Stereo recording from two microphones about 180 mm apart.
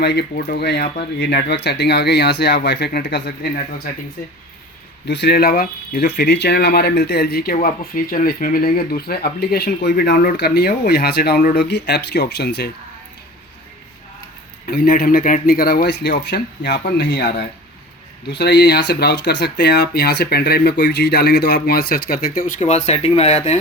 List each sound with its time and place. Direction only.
0.0 s speech: 65° left (ahead or behind)
5.0 s speech: 70° left (ahead or behind)
14.7 s speech: 55° left (ahead or behind); by 17.2 s 75° left (ahead or behind)
18.3 s speech: 70° left (ahead or behind); by 23.6 s 40° left (ahead or behind)